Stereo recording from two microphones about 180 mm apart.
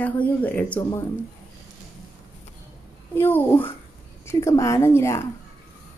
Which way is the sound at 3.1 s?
10° left (ahead or behind).